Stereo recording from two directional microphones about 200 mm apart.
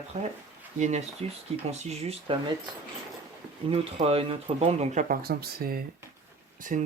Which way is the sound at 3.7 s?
30° right (ahead or behind).